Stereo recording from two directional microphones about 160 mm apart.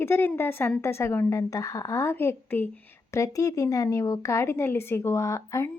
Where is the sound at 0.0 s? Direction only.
15° left (ahead or behind).